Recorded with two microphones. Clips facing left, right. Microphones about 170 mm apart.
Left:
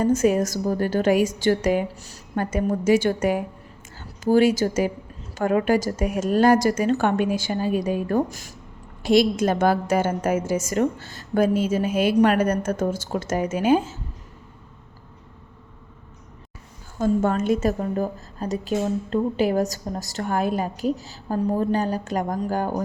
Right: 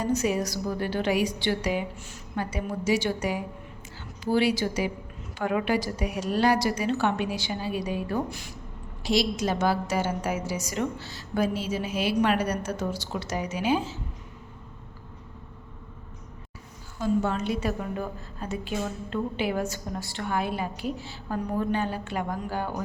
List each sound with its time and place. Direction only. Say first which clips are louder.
0.0 s a woman's voice: left 7 dB; 50° left (ahead or behind)
17.0 s a woman's voice: left 5 dB; 50° left (ahead or behind)